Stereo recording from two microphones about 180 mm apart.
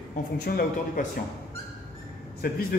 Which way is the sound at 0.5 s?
55° left (ahead or behind).